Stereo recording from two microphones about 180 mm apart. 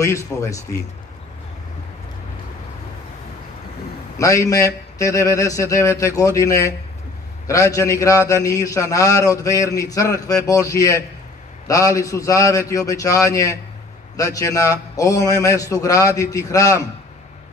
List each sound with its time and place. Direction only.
0.0 s speech: 15° left (ahead or behind)
4.2 s a man's voice: 15° left (ahead or behind)